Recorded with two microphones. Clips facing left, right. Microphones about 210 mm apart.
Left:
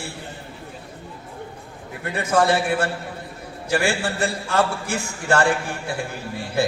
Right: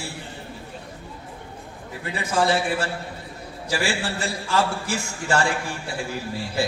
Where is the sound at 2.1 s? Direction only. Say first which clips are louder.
Left 3 dB; 55° left (ahead or behind).